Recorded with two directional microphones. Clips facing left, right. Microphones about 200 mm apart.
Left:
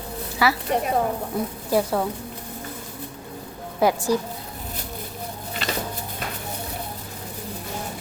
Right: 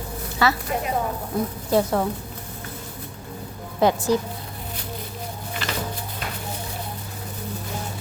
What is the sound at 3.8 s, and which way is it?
Speech, 10° left (ahead or behind).